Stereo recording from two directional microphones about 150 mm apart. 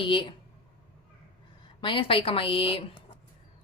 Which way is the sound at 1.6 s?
35° left (ahead or behind).